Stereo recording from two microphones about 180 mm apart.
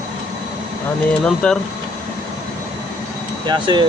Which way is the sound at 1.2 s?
5° left (ahead or behind).